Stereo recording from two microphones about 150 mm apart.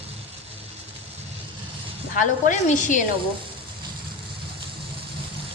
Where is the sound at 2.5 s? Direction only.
60° left (ahead or behind).